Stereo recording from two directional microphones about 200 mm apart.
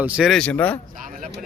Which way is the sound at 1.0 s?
40° right (ahead or behind).